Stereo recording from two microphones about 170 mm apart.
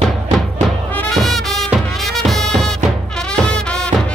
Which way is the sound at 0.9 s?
Centre (ahead or behind).